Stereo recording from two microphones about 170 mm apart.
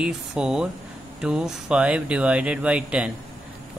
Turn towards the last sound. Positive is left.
turn(degrees=-5)  # may be behind; listen again after turning